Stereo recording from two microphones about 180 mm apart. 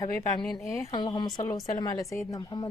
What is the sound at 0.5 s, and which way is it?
Speech, 15° left (ahead or behind).